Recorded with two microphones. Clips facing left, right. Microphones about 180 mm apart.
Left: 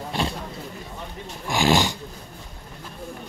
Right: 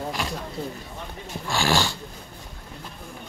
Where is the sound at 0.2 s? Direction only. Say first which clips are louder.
Left 3 dB; 30° left (ahead or behind).